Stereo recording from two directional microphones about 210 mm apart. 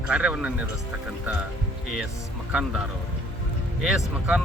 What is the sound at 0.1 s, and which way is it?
Speech, 5° right (ahead or behind).